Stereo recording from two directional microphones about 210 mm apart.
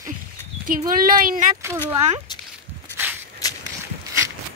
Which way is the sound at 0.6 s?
40° right (ahead or behind).